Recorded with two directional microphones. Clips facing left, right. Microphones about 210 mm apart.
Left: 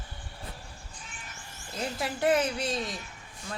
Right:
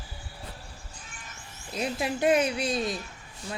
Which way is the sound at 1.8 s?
20° right (ahead or behind).